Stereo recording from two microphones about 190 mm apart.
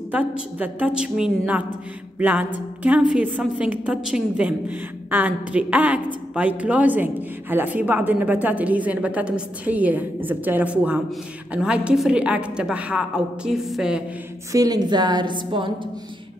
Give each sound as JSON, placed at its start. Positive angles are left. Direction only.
{"t": 0.1, "sound": "a woman's voice", "side_deg": -10}
{"t": 2.1, "sound": "a sound", "side_deg": -10}
{"t": 2.8, "sound": "a woman's voice", "side_deg": -5}
{"t": 14.5, "sound": "a woman's voice", "side_deg": -20}